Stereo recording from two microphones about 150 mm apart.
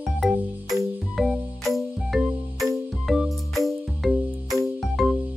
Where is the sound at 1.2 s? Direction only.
Centre (ahead or behind).